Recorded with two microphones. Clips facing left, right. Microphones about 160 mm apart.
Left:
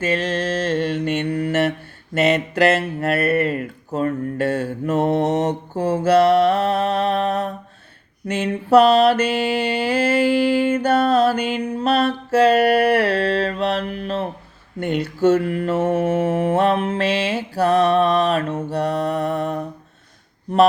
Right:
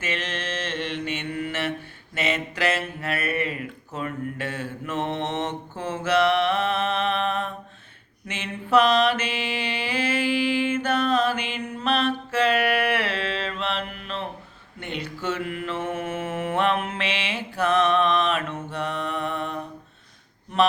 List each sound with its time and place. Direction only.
0.0 s speech: 35° left (ahead or behind)
8.3 s mantra: 40° left (ahead or behind)